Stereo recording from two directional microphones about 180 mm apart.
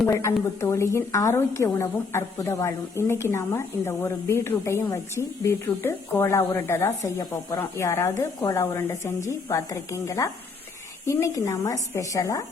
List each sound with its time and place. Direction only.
0.1 s a woman's voice: 15° left (ahead or behind)